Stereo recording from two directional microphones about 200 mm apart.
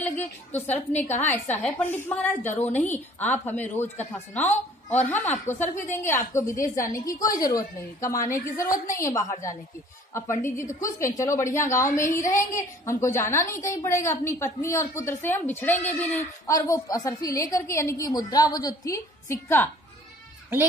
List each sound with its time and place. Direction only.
0.2 s a woman's voice: 10° left (ahead or behind)